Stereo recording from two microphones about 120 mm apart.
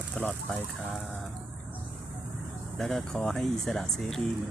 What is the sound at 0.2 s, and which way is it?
Speech, 10° left (ahead or behind).